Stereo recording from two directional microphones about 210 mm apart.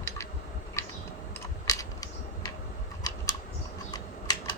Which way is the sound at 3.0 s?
15° left (ahead or behind).